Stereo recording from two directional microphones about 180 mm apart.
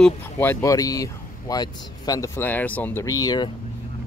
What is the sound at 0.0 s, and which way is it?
Speech, 10° left (ahead or behind).